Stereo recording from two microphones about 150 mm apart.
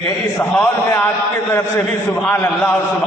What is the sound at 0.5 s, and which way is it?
A man's voice, 20° left (ahead or behind).